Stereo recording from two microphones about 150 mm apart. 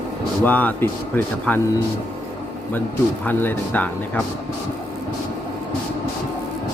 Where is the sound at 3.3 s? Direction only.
10° left (ahead or behind).